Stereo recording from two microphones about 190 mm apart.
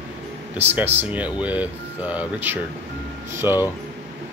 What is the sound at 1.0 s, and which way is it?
Speech, 10° right (ahead or behind).